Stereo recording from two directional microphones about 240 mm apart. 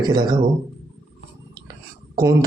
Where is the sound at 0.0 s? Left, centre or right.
Centre.